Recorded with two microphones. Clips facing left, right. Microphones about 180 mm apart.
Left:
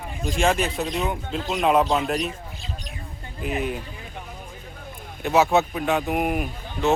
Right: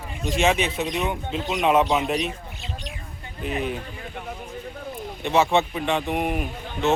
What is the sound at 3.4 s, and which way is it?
Speech, 5° left (ahead or behind).